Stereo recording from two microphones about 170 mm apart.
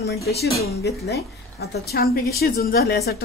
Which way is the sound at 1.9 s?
65° left (ahead or behind).